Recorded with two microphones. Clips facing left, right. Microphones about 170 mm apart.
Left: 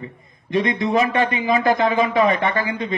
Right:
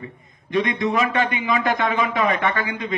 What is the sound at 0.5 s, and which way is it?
A man's voice, 25° left (ahead or behind).